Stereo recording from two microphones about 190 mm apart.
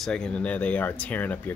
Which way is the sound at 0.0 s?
5° left (ahead or behind).